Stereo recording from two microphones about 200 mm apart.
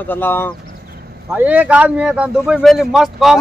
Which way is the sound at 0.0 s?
10° left (ahead or behind).